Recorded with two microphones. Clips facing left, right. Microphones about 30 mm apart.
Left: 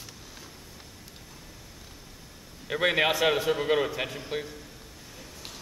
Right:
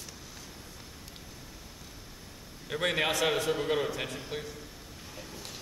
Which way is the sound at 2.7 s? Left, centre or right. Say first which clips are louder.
Left 5 dB; centre.